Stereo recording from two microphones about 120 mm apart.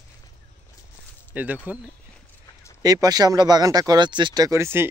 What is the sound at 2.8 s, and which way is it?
Speech, 30° right (ahead or behind).